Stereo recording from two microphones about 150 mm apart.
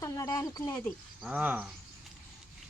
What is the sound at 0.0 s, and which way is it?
Speech, 25° left (ahead or behind).